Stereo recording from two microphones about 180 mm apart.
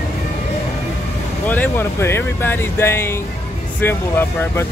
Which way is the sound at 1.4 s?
10° left (ahead or behind).